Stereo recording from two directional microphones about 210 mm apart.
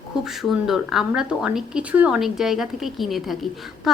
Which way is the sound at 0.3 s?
Centre (ahead or behind).